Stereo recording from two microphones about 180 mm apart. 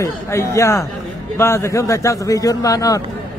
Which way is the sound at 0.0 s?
15° left (ahead or behind).